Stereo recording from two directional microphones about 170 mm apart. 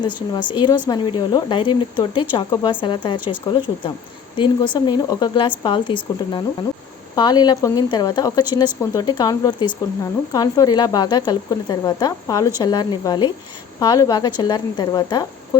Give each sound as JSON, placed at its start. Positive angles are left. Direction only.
{"t": 0.3, "sound": "a woman's voice", "side_deg": 25}
{"t": 4.4, "sound": "a woman's voice", "side_deg": 30}